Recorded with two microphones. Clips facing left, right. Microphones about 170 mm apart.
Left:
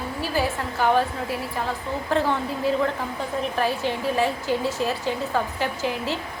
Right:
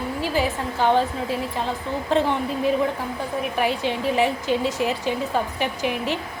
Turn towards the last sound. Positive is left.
turn(degrees=-20)  # may be behind; listen again after turning